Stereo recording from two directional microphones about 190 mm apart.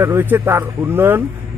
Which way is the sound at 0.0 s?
10° right (ahead or behind).